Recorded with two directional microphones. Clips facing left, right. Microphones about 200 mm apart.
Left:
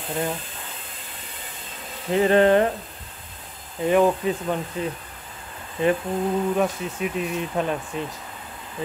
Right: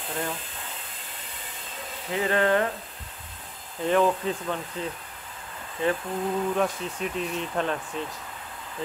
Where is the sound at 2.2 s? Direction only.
25° left (ahead or behind).